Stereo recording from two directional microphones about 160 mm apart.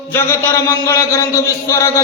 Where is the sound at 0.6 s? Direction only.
15° left (ahead or behind).